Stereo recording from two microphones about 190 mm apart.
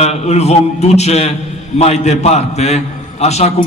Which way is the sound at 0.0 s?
35° left (ahead or behind).